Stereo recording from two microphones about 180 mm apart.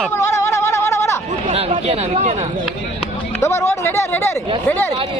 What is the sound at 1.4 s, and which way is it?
Speech, 35° right (ahead or behind).